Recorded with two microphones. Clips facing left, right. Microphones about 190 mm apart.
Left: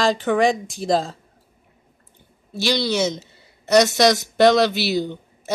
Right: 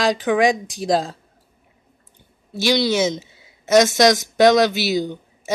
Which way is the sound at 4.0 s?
Centre (ahead or behind).